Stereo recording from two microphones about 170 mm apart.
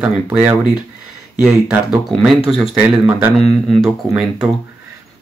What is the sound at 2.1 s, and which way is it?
Speech, centre (ahead or behind).